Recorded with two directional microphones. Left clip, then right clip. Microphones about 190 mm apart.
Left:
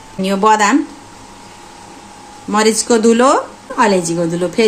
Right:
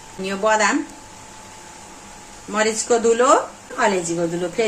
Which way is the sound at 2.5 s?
50° left (ahead or behind).